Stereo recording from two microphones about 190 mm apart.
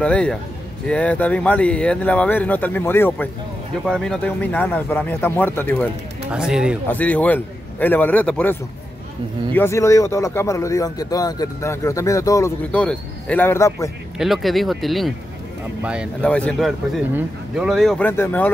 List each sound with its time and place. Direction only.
0.0 s speech: 5° left (ahead or behind)
6.3 s speech: 5° right (ahead or behind)
6.9 s speech: 10° left (ahead or behind)
14.1 s speech: centre (ahead or behind)
16.2 s speech: 5° left (ahead or behind)